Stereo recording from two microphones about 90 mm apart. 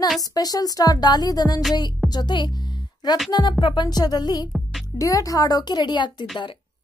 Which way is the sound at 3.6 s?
55° left (ahead or behind).